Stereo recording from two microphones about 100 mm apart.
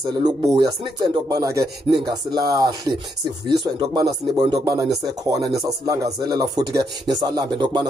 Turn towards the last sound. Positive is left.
turn(degrees=-45)  # may be behind; listen again after turning